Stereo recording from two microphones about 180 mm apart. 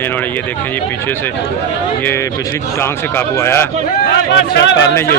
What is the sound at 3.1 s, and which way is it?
Speech, 15° left (ahead or behind).